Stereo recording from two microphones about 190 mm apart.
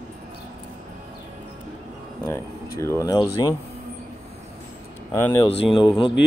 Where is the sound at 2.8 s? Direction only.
15° left (ahead or behind).